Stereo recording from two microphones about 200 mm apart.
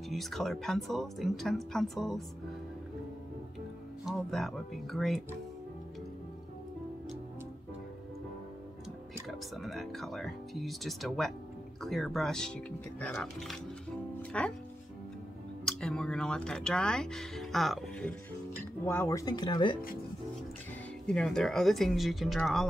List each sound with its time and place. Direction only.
0.1 s speech: centre (ahead or behind)
4.0 s speech: centre (ahead or behind)
9.3 s speech: centre (ahead or behind)
15.6 s speech: 5° left (ahead or behind); by 19.8 s 20° left (ahead or behind)
21.1 s speech: 5° left (ahead or behind)